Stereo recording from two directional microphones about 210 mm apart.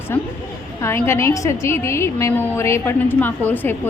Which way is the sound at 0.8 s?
10° left (ahead or behind).